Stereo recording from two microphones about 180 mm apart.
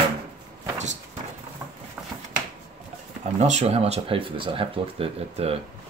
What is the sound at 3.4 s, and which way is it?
Speech, 35° right (ahead or behind).